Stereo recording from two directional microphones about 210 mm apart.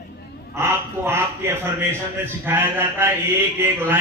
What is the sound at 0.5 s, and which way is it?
Speech, 10° right (ahead or behind).